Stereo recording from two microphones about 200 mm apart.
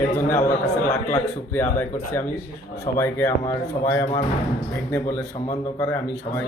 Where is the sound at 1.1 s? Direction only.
10° left (ahead or behind).